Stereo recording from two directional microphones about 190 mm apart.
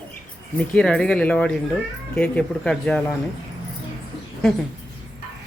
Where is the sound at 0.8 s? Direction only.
5° left (ahead or behind).